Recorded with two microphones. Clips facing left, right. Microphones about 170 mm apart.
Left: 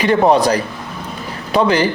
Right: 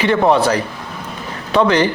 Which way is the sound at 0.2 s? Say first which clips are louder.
Left 2 dB; 15° left (ahead or behind).